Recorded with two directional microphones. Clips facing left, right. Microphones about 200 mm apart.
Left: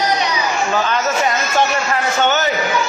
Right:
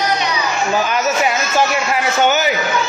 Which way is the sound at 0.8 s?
10° right (ahead or behind).